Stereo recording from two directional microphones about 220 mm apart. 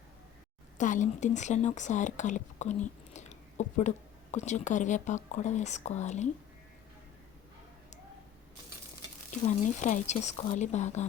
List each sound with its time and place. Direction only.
0.8 s speech: 35° left (ahead or behind)
9.5 s speech: 35° left (ahead or behind)